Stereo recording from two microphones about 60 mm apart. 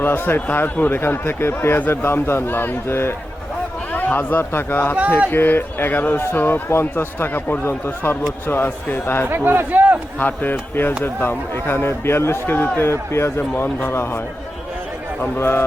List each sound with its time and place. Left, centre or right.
0.0 s speech: left
9.3 s a man's voice: right
10.2 s speech: left
15.4 s speech: left